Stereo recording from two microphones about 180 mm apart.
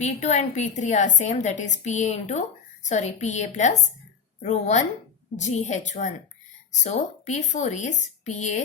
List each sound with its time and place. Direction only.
0.0 s a woman's voice: 40° left (ahead or behind)